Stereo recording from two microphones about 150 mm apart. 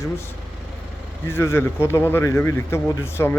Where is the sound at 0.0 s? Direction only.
15° left (ahead or behind).